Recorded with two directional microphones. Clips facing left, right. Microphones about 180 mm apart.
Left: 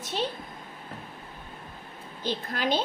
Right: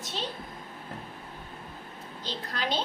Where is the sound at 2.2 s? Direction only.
55° left (ahead or behind).